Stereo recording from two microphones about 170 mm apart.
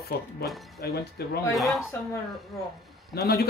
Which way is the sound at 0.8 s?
65° left (ahead or behind).